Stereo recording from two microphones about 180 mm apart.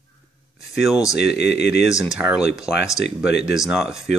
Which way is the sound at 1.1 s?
70° left (ahead or behind).